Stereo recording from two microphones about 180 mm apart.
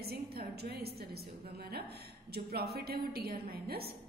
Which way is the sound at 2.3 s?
60° right (ahead or behind).